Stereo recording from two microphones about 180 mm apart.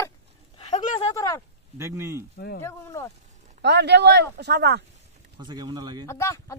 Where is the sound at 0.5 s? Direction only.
35° left (ahead or behind).